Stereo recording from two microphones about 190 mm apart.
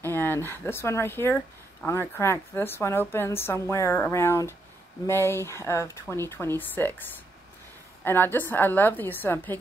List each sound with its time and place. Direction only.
0.0 s speech: 10° left (ahead or behind)